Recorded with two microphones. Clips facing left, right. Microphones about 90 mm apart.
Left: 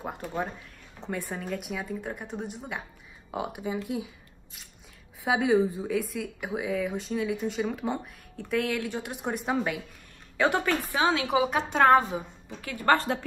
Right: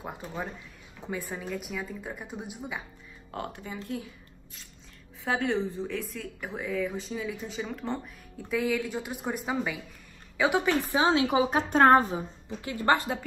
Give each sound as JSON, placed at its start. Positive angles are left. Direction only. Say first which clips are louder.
{"t": 0.0, "sound": "a woman's voice", "louder": "left 4 dB", "side_deg": 0}
{"t": 3.3, "sound": "speech", "louder": "left 5 dB", "side_deg": 15}
{"t": 5.2, "sound": "a woman's voice", "louder": "left 5 dB", "side_deg": 10}
{"t": 10.6, "sound": "a woman's voice", "louder": "right 1 dB", "side_deg": -20}
{"t": 12.6, "sound": "a woman's voice", "louder": "left 1 dB", "side_deg": -15}